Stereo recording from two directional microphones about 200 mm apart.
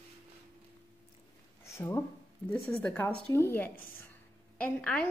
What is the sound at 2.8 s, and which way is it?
A child's voice, 10° left (ahead or behind).